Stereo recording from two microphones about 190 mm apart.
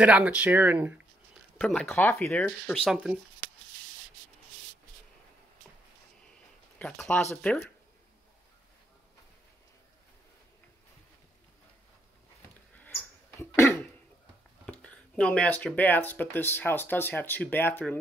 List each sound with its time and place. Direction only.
0.0 s speech: 5° right (ahead or behind)
1.6 s speech: 5° left (ahead or behind)
6.8 s speech: 5° left (ahead or behind)
12.7 s a sound: 10° left (ahead or behind)
14.7 s speech: 5° left (ahead or behind)